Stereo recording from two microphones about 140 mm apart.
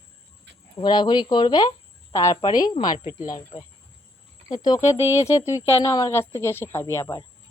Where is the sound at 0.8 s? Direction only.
30° left (ahead or behind).